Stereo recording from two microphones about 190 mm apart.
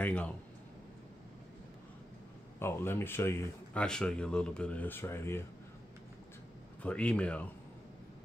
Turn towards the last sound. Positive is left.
turn(degrees=5)  # may be behind; listen again after turning